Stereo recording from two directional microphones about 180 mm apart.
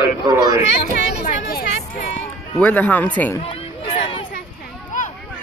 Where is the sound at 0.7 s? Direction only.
55° left (ahead or behind).